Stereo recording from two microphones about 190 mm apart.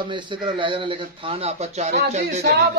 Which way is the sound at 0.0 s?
25° right (ahead or behind).